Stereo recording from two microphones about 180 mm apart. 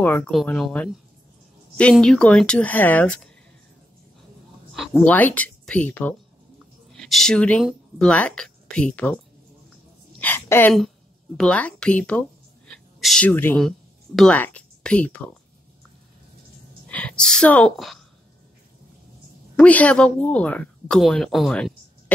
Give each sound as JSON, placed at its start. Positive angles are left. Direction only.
{"t": 0.0, "sound": "speech", "side_deg": 10}
{"t": 4.7, "sound": "speech", "side_deg": 5}
{"t": 10.2, "sound": "a sound", "side_deg": 10}
{"t": 11.3, "sound": "speech", "side_deg": 5}
{"t": 16.8, "sound": "speech", "side_deg": 10}
{"t": 19.5, "sound": "speech", "side_deg": 5}